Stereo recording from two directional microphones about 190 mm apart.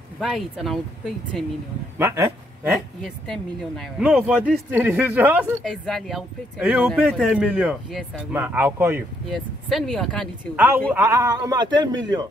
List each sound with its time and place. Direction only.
0.2 s speech: centre (ahead or behind)
2.0 s speech: 15° right (ahead or behind)
2.7 s speech: centre (ahead or behind)
5.6 s speech: centre (ahead or behind)
9.3 s speech: centre (ahead or behind)
10.9 s a man's voice: 15° right (ahead or behind)